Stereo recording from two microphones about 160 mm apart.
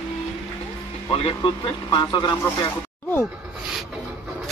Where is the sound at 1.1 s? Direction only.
35° left (ahead or behind).